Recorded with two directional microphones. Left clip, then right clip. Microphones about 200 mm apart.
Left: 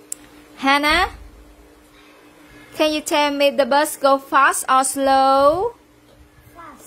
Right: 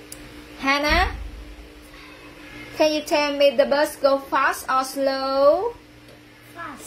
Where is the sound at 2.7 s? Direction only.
45° left (ahead or behind).